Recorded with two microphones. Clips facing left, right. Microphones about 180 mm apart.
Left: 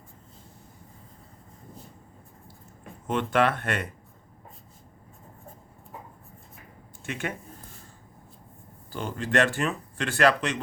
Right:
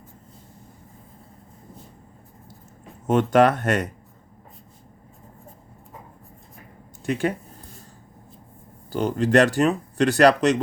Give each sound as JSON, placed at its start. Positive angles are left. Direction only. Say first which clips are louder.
{"t": 3.1, "sound": "speech", "louder": "right 7 dB", "side_deg": -45}
{"t": 7.0, "sound": "speech", "louder": "right 9 dB", "side_deg": -35}
{"t": 8.9, "sound": "speech", "louder": "right 9 dB", "side_deg": -40}